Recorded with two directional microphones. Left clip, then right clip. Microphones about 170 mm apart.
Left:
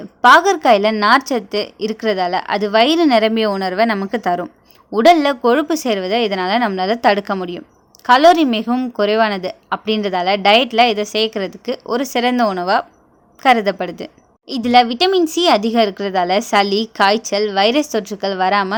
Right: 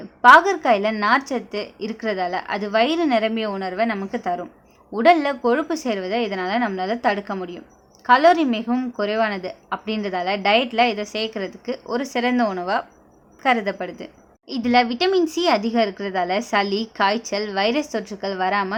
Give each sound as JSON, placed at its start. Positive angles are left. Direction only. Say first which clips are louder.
{"t": 0.2, "sound": "a woman's voice", "louder": "left 2 dB", "side_deg": 25}
{"t": 14.5, "sound": "speech", "louder": "left 6 dB", "side_deg": 25}